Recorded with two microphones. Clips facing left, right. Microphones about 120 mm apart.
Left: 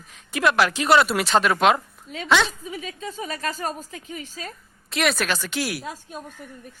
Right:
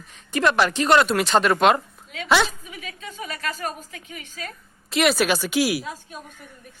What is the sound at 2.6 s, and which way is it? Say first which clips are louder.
A woman's voice: left 5 dB; 30° left (ahead or behind).